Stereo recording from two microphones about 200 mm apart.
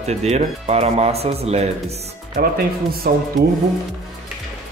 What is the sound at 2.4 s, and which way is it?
Speech, 45° right (ahead or behind).